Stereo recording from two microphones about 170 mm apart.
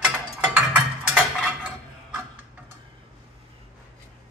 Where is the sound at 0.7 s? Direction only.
5° right (ahead or behind).